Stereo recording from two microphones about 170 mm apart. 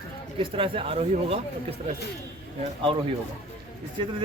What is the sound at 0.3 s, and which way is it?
Speech, 30° right (ahead or behind).